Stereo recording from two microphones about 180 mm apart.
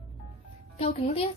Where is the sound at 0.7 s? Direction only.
35° left (ahead or behind).